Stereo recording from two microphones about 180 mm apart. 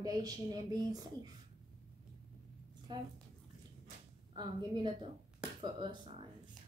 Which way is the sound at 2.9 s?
25° right (ahead or behind).